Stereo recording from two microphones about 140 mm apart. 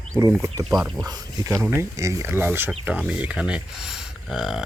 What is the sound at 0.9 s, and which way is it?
Speech, 25° right (ahead or behind).